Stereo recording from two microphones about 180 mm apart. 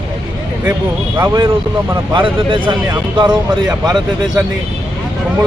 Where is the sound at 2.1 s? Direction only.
30° right (ahead or behind).